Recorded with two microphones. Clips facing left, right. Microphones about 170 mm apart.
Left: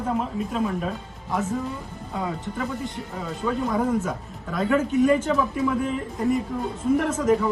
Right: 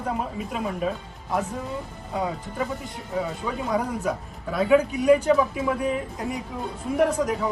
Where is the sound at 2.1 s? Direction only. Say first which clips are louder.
Right 1 dB; centre (ahead or behind).